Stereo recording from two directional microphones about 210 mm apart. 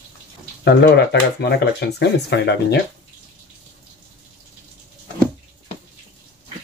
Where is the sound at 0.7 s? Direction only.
50° left (ahead or behind).